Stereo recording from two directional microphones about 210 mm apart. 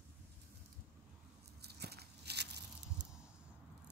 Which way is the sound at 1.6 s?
50° right (ahead or behind).